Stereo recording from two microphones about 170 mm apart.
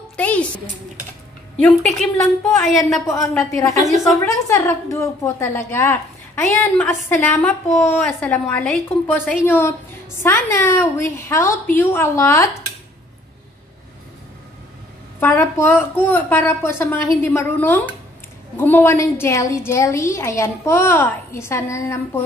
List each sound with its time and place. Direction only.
0.2 s a child's voice: 10° left (ahead or behind)
2.6 s a woman's voice: centre (ahead or behind)
3.1 s a woman's voice: 20° left (ahead or behind)
15.1 s a woman's voice: 15° left (ahead or behind)